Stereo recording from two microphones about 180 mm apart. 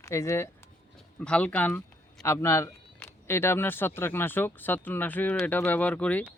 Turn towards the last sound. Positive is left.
turn(degrees=5)  # may be behind; listen again after turning